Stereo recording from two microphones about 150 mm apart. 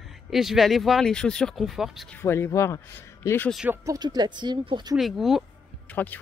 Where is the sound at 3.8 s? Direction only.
25° right (ahead or behind).